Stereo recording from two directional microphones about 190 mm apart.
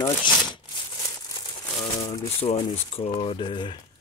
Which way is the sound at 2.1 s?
30° left (ahead or behind).